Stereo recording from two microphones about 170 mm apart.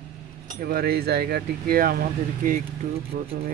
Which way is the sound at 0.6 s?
65° right (ahead or behind).